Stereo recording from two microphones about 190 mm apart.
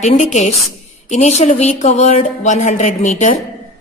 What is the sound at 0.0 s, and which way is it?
A woman's voice, 40° left (ahead or behind).